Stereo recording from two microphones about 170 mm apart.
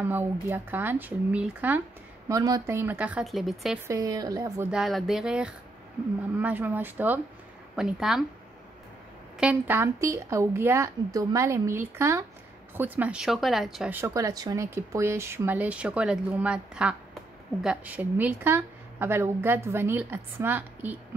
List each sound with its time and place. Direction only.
0.0 s a woman's voice: 15° right (ahead or behind)
2.2 s a woman's voice: 20° right (ahead or behind); by 3.8 s centre (ahead or behind)
3.8 s a woman's voice: 20° right (ahead or behind)
4.6 s a woman's voice: centre (ahead or behind)
9.4 s a woman's voice: 10° right (ahead or behind)
14.0 s a woman's voice: 20° right (ahead or behind)